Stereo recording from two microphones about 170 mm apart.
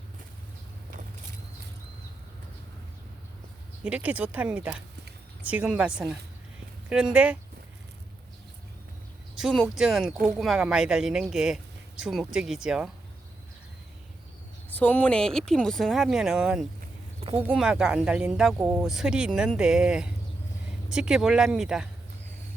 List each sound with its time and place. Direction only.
3.8 s speech: 10° right (ahead or behind)
9.4 s speech: centre (ahead or behind)
14.7 s speech: 10° left (ahead or behind); by 18.8 s 15° right (ahead or behind)
18.8 s speech: centre (ahead or behind)